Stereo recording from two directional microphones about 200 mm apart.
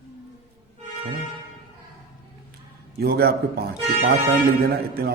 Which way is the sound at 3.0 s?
50° right (ahead or behind).